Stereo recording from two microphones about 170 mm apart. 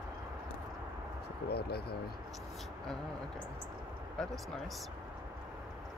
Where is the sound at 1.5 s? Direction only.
70° left (ahead or behind).